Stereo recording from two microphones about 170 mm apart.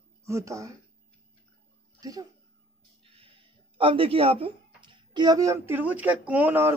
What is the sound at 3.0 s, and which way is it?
Speech, 35° right (ahead or behind).